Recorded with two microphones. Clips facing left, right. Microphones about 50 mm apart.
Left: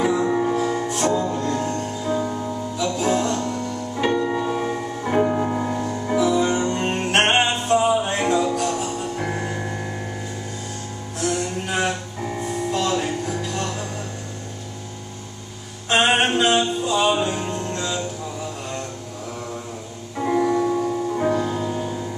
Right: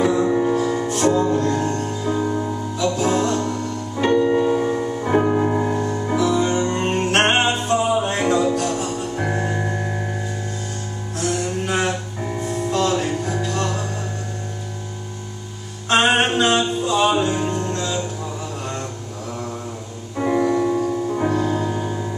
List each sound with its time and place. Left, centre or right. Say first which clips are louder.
0.0 s music: right 2 dB; centre
1.1 s music: right 4 dB; centre
2.8 s music: right 2 dB; centre
4.6 s music: right 4 dB; centre
6.1 s music: even; centre
11.2 s music: right 1 dB; centre
13.0 s music: right 2 dB; centre
15.9 s music: right 1 dB; centre
20.2 s music: right 1 dB; centre
21.6 s music: right 2 dB; centre